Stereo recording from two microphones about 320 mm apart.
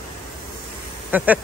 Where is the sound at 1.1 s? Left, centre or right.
Centre.